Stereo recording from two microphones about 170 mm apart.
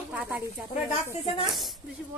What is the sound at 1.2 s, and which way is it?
Speech, 30° left (ahead or behind).